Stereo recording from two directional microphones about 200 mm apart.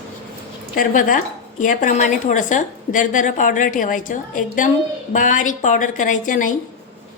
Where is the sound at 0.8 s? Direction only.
40° left (ahead or behind).